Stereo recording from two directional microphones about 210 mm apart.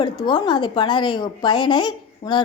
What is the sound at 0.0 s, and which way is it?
A woman's voice, 20° left (ahead or behind).